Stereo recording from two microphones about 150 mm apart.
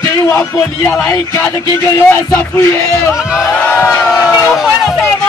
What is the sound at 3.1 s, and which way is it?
Speech, 5° right (ahead or behind).